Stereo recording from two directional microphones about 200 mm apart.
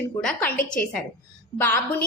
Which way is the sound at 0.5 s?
40° left (ahead or behind).